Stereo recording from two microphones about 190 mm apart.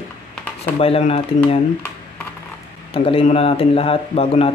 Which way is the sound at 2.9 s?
30° left (ahead or behind).